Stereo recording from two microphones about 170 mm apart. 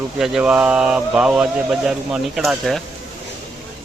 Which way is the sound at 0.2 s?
5° right (ahead or behind).